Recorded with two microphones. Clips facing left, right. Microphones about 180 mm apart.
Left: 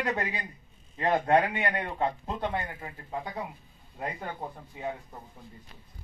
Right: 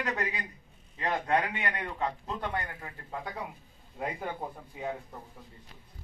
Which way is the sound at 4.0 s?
5° right (ahead or behind).